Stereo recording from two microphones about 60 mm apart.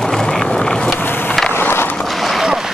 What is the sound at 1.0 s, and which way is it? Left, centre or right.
Vehicle, left.